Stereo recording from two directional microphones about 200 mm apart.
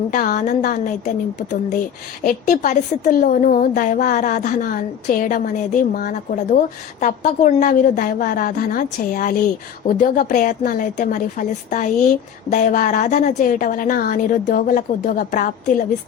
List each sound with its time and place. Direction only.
0.1 s a woman's voice: 45° left (ahead or behind)